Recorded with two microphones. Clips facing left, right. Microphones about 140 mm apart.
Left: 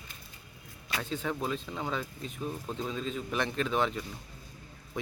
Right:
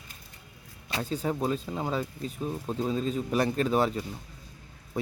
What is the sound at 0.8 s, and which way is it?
Speech, 35° right (ahead or behind).